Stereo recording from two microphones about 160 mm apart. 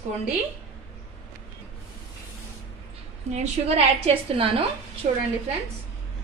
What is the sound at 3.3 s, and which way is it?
A woman's voice, 40° right (ahead or behind).